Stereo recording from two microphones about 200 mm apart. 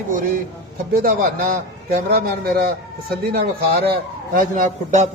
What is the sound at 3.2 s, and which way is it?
Speech, 50° right (ahead or behind).